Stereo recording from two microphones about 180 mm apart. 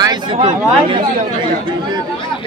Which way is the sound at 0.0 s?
25° right (ahead or behind).